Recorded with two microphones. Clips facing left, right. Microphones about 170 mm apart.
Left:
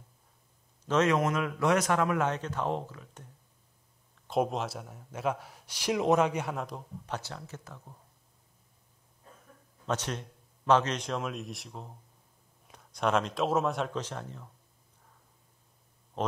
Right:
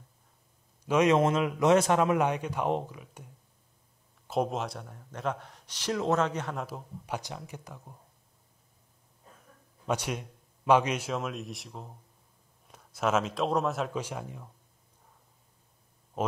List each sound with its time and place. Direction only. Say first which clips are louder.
0.8 s a man's voice: right 2 dB; 10° right (ahead or behind)
1.1 s speech: right 4 dB; 25° right (ahead or behind)
4.3 s a man's voice: even; centre (ahead or behind)
6.6 s a man's voice: even; 5° right (ahead or behind)
9.8 s a man's voice: right 2 dB; 10° right (ahead or behind)
16.2 s speech: right 1 dB; 10° right (ahead or behind)